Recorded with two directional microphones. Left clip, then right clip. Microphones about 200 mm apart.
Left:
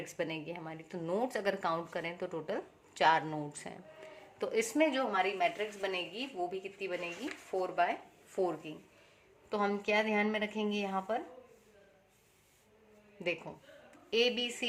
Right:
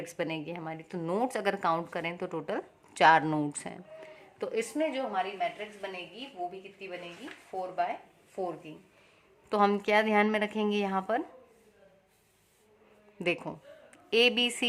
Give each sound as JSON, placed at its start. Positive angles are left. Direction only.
{"t": 0.0, "sound": "a woman's voice", "side_deg": -25}
{"t": 4.4, "sound": "speech", "side_deg": -15}
{"t": 4.6, "sound": "a woman's voice", "side_deg": 0}
{"t": 4.9, "sound": "a woman's voice", "side_deg": 25}
{"t": 9.5, "sound": "a woman's voice", "side_deg": -45}
{"t": 13.1, "sound": "a woman's voice", "side_deg": -40}